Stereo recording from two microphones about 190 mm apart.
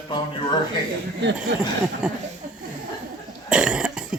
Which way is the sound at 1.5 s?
65° right (ahead or behind).